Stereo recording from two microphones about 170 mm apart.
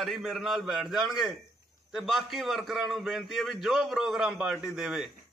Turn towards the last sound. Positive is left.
turn(degrees=-5)  # may be behind; listen again after turning